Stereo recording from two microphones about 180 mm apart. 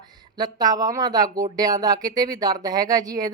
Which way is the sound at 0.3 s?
20° right (ahead or behind).